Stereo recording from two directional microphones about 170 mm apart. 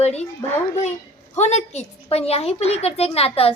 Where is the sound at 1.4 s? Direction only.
40° left (ahead or behind).